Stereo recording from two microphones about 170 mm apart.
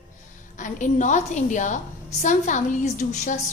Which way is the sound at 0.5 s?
50° left (ahead or behind).